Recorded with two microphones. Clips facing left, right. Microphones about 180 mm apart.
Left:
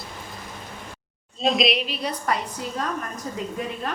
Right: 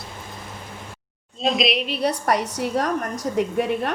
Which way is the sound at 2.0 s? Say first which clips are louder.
Right 7 dB; 70° right (ahead or behind).